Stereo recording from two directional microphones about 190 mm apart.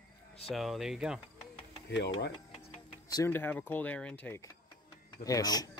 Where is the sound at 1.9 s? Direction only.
70° left (ahead or behind).